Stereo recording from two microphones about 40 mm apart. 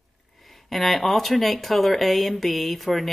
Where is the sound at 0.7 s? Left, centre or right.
Centre.